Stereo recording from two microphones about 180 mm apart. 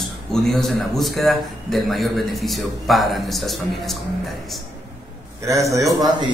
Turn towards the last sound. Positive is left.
turn(degrees=-20)  # may be behind; listen again after turning